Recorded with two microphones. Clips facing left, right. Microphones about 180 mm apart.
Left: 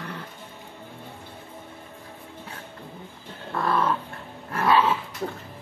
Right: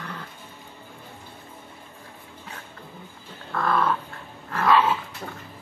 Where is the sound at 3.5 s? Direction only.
25° left (ahead or behind).